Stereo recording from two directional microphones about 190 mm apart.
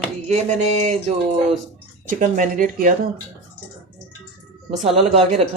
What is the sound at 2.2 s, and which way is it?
Speech, 45° right (ahead or behind).